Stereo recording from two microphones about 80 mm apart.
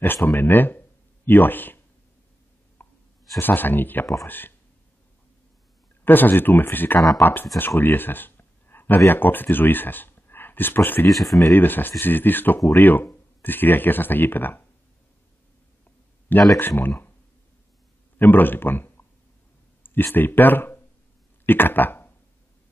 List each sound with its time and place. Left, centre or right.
0.0 s speech: left
2.8 s plop: left
3.3 s speech: left
6.0 s speech: left
11.1 s speech: centre
11.5 s speech: left
16.5 s speech: left
18.2 s speech: left